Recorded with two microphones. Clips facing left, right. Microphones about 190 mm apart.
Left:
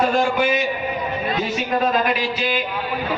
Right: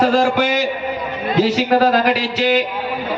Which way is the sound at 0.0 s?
90° right.